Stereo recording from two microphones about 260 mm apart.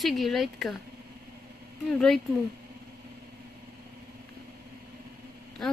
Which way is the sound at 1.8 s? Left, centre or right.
Centre.